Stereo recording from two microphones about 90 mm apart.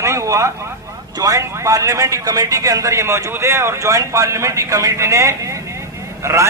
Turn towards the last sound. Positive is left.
turn(degrees=-30)  # may be behind; listen again after turning